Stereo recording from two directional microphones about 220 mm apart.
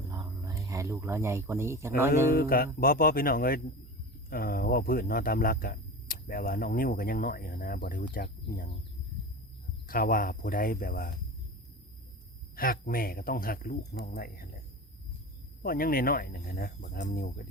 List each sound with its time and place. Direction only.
0.1 s a sound: 15° right (ahead or behind)
2.3 s mantra: 40° left (ahead or behind)
2.8 s speech: 40° left (ahead or behind)
9.8 s speech: 40° left (ahead or behind)
12.5 s speech: 40° left (ahead or behind)
15.6 s speech: 40° left (ahead or behind)